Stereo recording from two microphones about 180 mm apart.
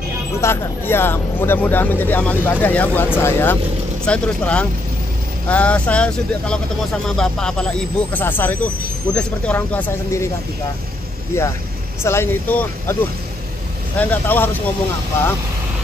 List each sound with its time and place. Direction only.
0.4 s speech: 15° left (ahead or behind)
11.3 s speech: 15° left (ahead or behind)
13.9 s speech: 10° left (ahead or behind)